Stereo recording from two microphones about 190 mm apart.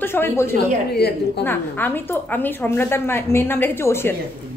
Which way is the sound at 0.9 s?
60° left (ahead or behind).